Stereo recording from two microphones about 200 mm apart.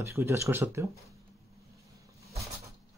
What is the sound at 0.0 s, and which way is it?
Speech, 15° right (ahead or behind).